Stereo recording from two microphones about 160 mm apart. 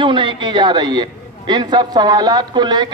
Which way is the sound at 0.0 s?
30° right (ahead or behind).